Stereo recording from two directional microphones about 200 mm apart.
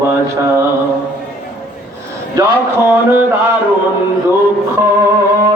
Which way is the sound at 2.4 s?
10° right (ahead or behind).